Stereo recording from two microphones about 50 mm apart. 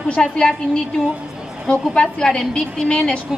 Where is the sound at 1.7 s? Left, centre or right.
Centre.